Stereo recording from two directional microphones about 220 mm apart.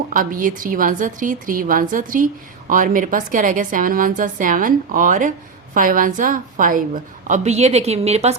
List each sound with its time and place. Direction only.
0.1 s a woman's voice: 35° right (ahead or behind)